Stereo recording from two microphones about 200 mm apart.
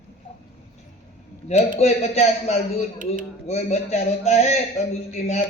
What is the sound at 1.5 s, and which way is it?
A man's voice, 35° left (ahead or behind).